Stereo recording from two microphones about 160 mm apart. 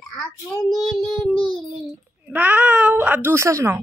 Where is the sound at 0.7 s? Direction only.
Centre (ahead or behind).